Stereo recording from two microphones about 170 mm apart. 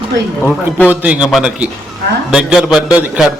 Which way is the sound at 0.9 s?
10° right (ahead or behind).